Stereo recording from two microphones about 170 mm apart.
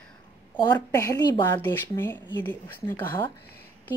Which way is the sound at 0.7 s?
20° left (ahead or behind).